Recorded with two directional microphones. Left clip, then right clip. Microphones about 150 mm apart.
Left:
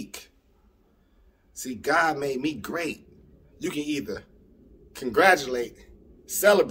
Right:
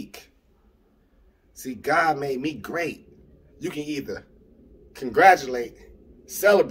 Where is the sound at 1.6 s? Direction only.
20° left (ahead or behind).